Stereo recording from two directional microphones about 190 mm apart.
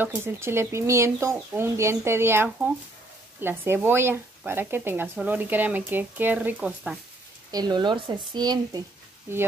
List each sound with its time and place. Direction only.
0.0 s speech: 10° right (ahead or behind)
7.5 s speech: 20° right (ahead or behind)